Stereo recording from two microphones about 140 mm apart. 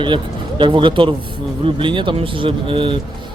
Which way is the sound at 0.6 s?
35° right (ahead or behind).